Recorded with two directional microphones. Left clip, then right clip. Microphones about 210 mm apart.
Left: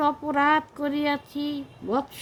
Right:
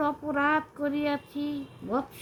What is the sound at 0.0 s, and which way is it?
Female singing, 55° left (ahead or behind).